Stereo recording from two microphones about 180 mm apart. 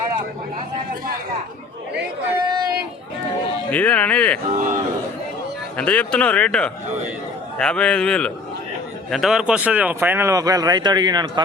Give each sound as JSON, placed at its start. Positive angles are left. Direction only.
{"t": 3.7, "sound": "speech", "side_deg": 10}
{"t": 4.5, "sound": "a man's voice", "side_deg": -45}
{"t": 5.7, "sound": "a man's voice", "side_deg": 5}